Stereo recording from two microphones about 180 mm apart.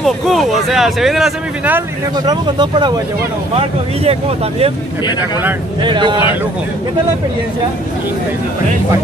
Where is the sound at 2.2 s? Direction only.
25° right (ahead or behind).